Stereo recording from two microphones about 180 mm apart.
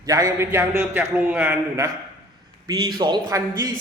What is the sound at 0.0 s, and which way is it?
A man's voice, 20° right (ahead or behind).